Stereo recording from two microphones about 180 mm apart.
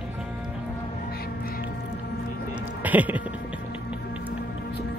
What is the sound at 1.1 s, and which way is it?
Music, 60° left (ahead or behind).